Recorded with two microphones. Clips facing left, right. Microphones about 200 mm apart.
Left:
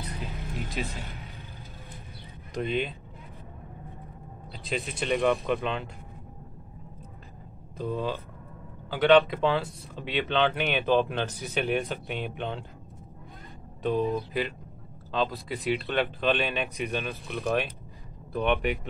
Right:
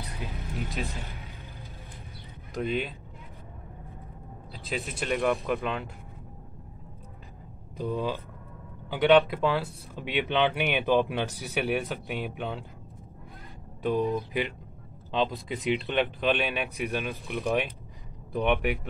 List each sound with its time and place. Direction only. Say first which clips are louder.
0.4 s vehicle: right 1 dB; centre (ahead or behind)
2.5 s speech: left 1 dB; 5° right (ahead or behind)
4.5 s speech: left 1 dB; 5° right (ahead or behind)
7.7 s speech: even; 15° right (ahead or behind)
13.8 s speech: even; 15° right (ahead or behind)